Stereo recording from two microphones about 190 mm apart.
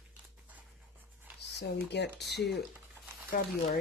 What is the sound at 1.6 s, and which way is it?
Speech, 60° left (ahead or behind).